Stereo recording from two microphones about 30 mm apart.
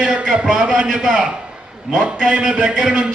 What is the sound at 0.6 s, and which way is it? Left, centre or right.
A man's voice, right.